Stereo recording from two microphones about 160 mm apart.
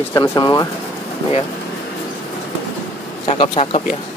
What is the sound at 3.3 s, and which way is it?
Speech, 35° left (ahead or behind).